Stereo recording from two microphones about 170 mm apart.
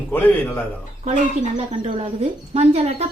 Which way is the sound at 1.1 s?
40° right (ahead or behind).